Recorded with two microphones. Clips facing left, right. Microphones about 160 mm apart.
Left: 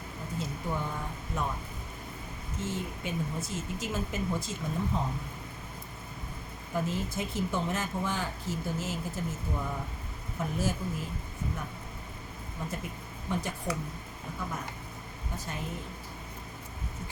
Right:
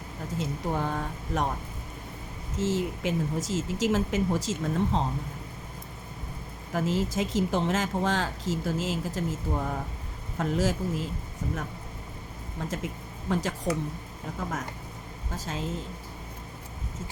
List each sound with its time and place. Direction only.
0.3 s speech: 90° right
2.6 s speech: 90° right
6.7 s speech: 90° right
12.5 s speech: 90° right
15.4 s speech: 90° right